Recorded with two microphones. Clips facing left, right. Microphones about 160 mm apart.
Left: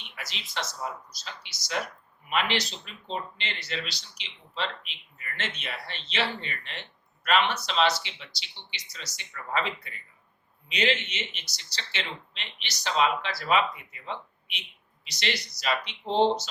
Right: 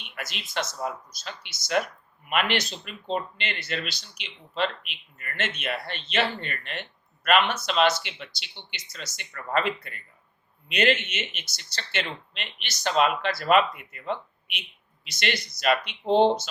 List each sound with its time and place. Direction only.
0.1 s speech: 55° right (ahead or behind)